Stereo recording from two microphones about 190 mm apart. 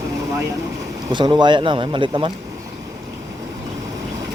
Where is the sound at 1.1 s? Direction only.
25° right (ahead or behind).